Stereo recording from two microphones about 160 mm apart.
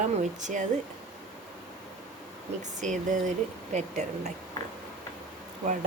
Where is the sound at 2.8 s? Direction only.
50° right (ahead or behind).